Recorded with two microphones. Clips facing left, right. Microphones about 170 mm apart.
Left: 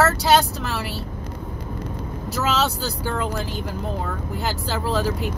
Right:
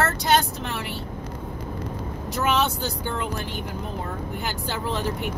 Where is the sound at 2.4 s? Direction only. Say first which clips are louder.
Left 1 dB; 90° left.